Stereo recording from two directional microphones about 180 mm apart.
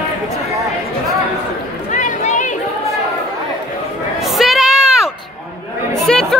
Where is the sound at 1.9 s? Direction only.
45° left (ahead or behind).